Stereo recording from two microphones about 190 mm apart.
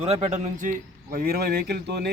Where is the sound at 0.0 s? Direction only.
35° right (ahead or behind).